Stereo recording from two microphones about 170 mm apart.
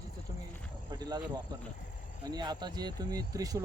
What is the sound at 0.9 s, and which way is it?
Speech, 25° right (ahead or behind).